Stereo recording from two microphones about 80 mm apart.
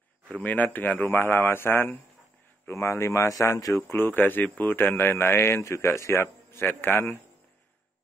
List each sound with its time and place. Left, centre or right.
0.3 s speech: centre
2.7 s speech: left
3.9 s speech: left